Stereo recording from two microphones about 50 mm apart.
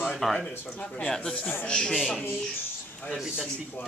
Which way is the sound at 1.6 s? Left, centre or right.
Centre.